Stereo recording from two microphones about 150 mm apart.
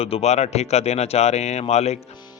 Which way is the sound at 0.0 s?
45° left (ahead or behind).